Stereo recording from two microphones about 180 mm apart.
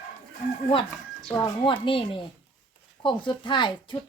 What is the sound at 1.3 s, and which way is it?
Speech, 25° left (ahead or behind).